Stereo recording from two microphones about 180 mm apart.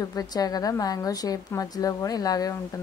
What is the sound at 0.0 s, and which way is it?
A woman's voice, 20° left (ahead or behind).